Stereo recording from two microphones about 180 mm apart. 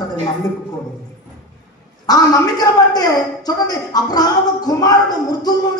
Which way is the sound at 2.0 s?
20° left (ahead or behind).